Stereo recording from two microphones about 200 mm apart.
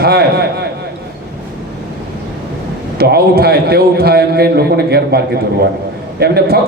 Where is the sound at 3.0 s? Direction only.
50° right (ahead or behind).